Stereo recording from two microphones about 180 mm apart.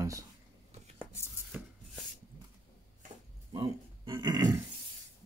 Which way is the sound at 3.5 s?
25° right (ahead or behind).